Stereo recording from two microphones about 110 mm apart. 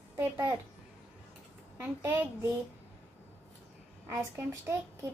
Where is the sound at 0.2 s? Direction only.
25° right (ahead or behind).